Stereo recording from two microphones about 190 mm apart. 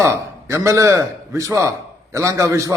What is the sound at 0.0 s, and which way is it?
A man's voice, 15° right (ahead or behind).